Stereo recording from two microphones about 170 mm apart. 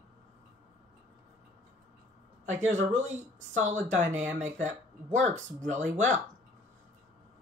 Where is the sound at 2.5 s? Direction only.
45° right (ahead or behind).